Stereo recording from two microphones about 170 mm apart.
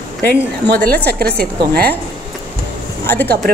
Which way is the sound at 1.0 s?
65° right (ahead or behind).